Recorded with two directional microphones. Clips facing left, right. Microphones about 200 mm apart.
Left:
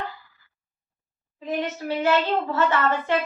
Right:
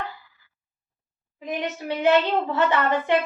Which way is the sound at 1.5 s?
15° right (ahead or behind).